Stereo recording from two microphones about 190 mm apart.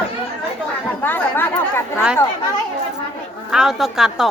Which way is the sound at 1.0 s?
10° left (ahead or behind).